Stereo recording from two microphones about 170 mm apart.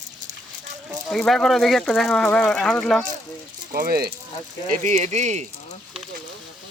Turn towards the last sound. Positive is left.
turn(degrees=-40)  # may be behind; listen again after turning